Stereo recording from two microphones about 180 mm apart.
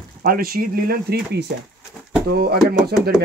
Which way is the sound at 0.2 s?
55° right (ahead or behind).